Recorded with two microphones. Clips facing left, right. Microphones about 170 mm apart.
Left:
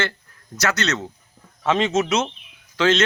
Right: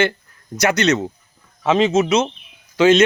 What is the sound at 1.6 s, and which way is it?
Speech, 5° right (ahead or behind).